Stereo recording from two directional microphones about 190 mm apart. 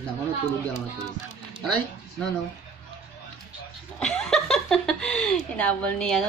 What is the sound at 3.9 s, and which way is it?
Speech, 5° left (ahead or behind).